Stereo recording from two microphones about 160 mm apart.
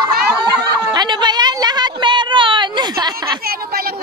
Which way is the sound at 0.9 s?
25° right (ahead or behind).